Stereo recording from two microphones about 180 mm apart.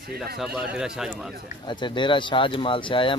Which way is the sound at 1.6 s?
25° left (ahead or behind).